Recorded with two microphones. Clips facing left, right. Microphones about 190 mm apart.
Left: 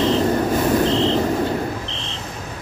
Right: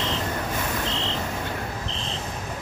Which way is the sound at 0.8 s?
35° left (ahead or behind).